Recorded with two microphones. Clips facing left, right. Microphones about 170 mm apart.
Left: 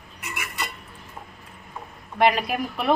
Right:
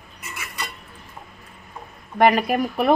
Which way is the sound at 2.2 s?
45° right (ahead or behind).